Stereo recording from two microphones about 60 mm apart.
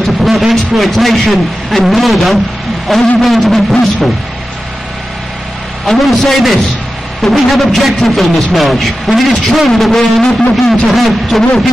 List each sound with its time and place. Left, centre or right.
0.0 s a man's voice: centre
5.9 s a man's voice: centre